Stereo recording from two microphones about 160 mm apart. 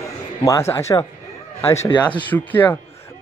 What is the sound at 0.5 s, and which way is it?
Speech, 15° left (ahead or behind).